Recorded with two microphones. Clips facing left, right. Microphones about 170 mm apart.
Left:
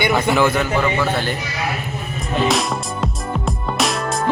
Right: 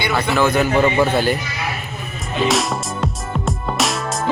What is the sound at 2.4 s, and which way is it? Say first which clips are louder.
Music: right 3 dB; centre (ahead or behind).